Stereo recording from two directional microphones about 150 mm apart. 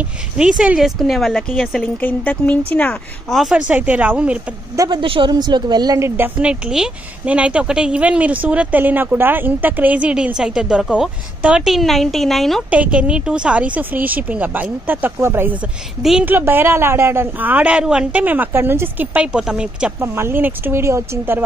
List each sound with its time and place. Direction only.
0.6 s a woman's voice: 5° right (ahead or behind)
2.0 s a woman's voice: 10° left (ahead or behind); by 4.4 s 10° right (ahead or behind)
4.7 s a woman's voice: 30° right (ahead or behind); by 12.6 s centre (ahead or behind)
12.6 s a woman's voice: 10° right (ahead or behind)